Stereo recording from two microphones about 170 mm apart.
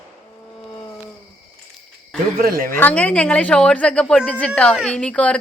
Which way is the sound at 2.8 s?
10° left (ahead or behind).